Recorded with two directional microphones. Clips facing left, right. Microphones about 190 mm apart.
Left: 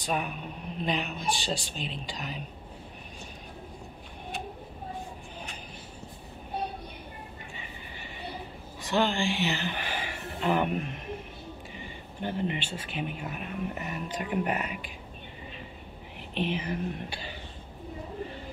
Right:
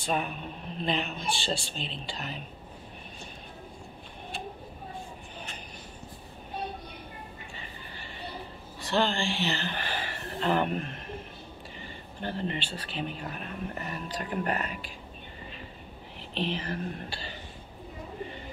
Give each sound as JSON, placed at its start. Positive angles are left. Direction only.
{"t": 0.0, "sound": "speech", "side_deg": 5}
{"t": 8.8, "sound": "speech", "side_deg": 15}
{"t": 16.3, "sound": "speech", "side_deg": 15}